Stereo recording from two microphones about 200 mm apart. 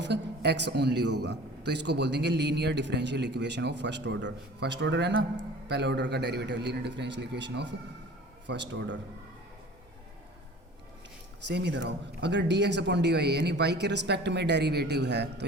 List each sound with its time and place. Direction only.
0.0 s a man's voice: 60° right (ahead or behind)
11.4 s a man's voice: 60° right (ahead or behind)